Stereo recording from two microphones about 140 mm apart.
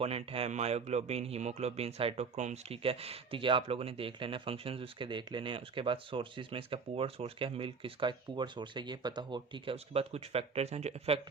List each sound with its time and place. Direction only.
0.0 s speech: 45° right (ahead or behind)
9.7 s speech: 45° right (ahead or behind)